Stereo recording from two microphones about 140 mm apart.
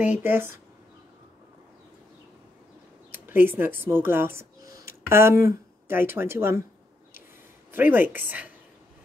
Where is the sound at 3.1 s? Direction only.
15° right (ahead or behind).